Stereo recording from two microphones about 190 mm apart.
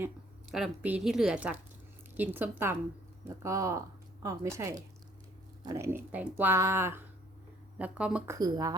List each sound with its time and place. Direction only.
0.5 s a woman's voice: 5° right (ahead or behind)
8.4 s speech: 20° right (ahead or behind)